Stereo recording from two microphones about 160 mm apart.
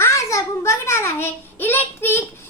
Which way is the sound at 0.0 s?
20° left (ahead or behind).